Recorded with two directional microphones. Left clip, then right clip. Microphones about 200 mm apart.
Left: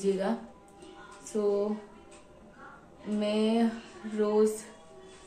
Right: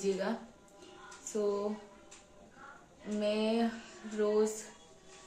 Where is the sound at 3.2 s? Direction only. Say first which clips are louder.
Left 3 dB; centre (ahead or behind).